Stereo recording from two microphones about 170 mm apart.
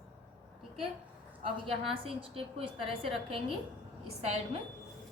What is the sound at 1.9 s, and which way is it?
A woman's voice, 35° right (ahead or behind).